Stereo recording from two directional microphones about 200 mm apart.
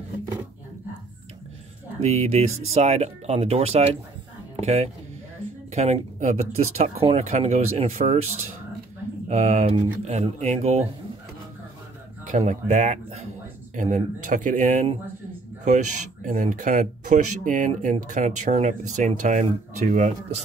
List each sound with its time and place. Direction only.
2.0 s speech: 30° right (ahead or behind)
9.3 s speech: 35° right (ahead or behind)
12.3 s speech: 35° right (ahead or behind)